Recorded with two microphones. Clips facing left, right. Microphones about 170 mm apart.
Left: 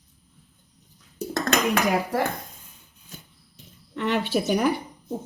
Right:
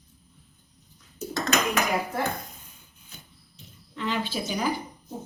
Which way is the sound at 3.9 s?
70° left (ahead or behind).